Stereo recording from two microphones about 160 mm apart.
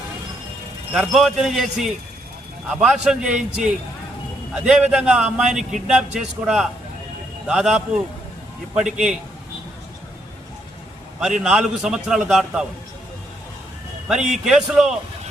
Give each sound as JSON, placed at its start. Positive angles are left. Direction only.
{"t": 0.9, "sound": "a man's voice", "side_deg": -5}
{"t": 4.5, "sound": "a man's voice", "side_deg": -5}
{"t": 11.2, "sound": "a man's voice", "side_deg": -5}
{"t": 14.2, "sound": "a man's voice", "side_deg": -50}
{"t": 14.4, "sound": "a man's voice", "side_deg": 0}